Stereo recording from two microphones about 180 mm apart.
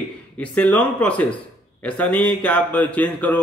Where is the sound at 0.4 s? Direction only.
5° left (ahead or behind).